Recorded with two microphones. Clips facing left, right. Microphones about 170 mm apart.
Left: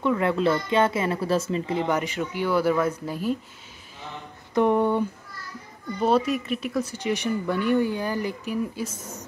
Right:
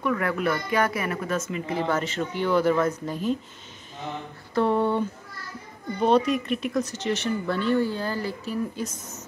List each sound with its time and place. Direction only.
0.0 s speech: 25° left (ahead or behind)
4.6 s speech: 15° left (ahead or behind)